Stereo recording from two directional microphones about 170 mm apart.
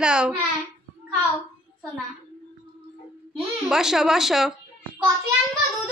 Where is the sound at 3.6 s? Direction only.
5° right (ahead or behind).